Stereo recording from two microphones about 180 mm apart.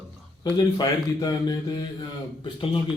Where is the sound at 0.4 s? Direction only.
20° left (ahead or behind).